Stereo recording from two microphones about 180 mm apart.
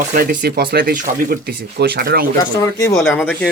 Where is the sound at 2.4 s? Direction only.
20° left (ahead or behind).